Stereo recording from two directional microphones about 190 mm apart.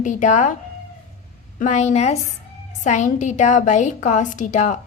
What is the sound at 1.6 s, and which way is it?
A woman's voice, 35° left (ahead or behind).